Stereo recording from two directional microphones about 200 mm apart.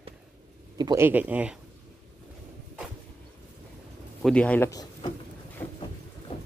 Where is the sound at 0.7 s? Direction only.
15° right (ahead or behind).